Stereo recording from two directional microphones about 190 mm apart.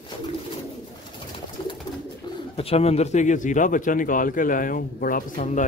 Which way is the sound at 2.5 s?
30° left (ahead or behind).